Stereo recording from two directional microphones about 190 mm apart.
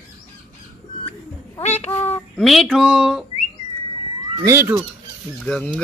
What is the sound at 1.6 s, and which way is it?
Speech, 35° left (ahead or behind).